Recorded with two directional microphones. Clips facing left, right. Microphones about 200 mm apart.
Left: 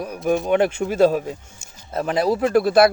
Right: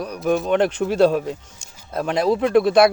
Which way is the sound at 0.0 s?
5° left (ahead or behind).